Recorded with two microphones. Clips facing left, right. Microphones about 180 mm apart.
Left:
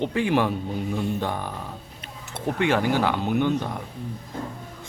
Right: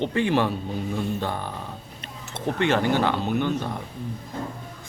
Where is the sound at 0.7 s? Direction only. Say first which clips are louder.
Even; 15° left (ahead or behind).